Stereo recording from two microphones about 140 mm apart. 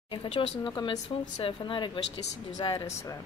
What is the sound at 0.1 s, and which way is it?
Speech, 40° left (ahead or behind).